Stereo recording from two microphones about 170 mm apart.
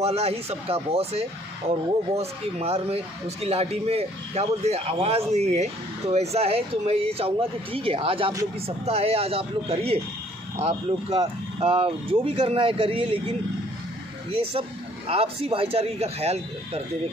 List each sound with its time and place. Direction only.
0.0 s speech: 35° right (ahead or behind)
15.0 s speech: 35° right (ahead or behind)